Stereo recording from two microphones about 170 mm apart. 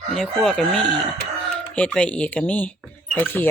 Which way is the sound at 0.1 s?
Centre (ahead or behind).